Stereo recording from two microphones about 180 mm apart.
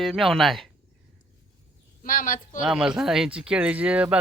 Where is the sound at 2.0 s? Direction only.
50° left (ahead or behind).